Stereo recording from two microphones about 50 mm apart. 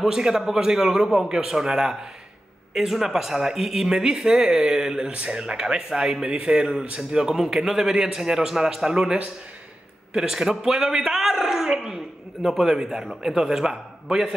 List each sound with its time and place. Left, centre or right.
0.0 s speech: centre
6.2 s a sound: centre
7.1 s a man's voice: centre